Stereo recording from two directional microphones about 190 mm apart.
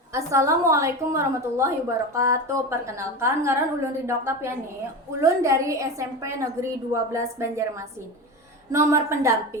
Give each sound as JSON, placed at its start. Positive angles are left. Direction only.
{"t": 0.1, "sound": "a woman's voice", "side_deg": -15}
{"t": 5.2, "sound": "a woman's voice", "side_deg": -15}
{"t": 8.7, "sound": "a woman's voice", "side_deg": -15}